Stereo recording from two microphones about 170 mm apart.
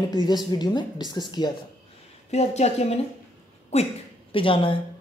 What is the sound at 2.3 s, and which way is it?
Speech, 40° left (ahead or behind).